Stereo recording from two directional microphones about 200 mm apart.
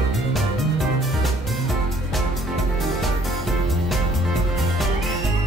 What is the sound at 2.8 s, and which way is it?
Music, centre (ahead or behind).